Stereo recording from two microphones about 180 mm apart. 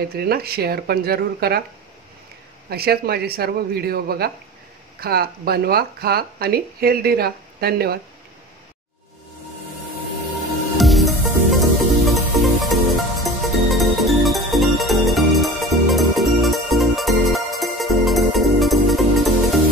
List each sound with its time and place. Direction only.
0.1 s speech: 60° right (ahead or behind)
2.7 s speech: 60° right (ahead or behind)
10.8 s music: centre (ahead or behind)